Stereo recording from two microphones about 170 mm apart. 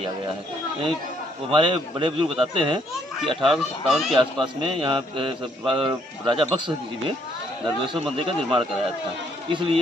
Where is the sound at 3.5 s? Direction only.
Centre (ahead or behind).